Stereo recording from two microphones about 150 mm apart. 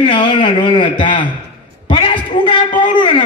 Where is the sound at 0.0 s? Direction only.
35° left (ahead or behind).